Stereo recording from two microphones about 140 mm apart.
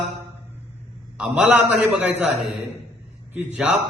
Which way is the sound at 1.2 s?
5° right (ahead or behind).